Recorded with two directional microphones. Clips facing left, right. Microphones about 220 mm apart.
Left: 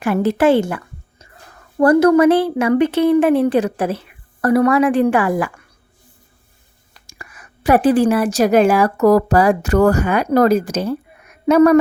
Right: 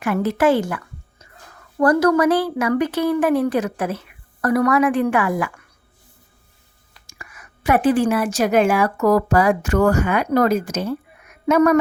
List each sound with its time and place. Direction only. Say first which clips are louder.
0.0 s speech: left 3 dB; 30° left (ahead or behind)
1.8 s speech: left 5 dB; 25° left (ahead or behind)
6.9 s a woman's voice: left 2 dB; 35° left (ahead or behind)